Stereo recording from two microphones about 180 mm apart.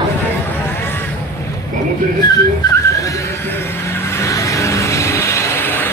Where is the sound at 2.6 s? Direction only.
20° left (ahead or behind).